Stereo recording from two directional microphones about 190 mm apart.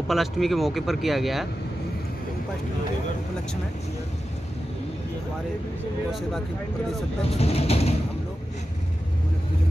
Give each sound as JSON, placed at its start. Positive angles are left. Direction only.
{"t": 0.1, "sound": "speech", "side_deg": 0}
{"t": 7.3, "sound": "speech", "side_deg": 30}